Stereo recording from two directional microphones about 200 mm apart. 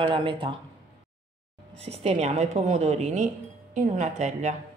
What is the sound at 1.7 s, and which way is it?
Speech, 30° right (ahead or behind).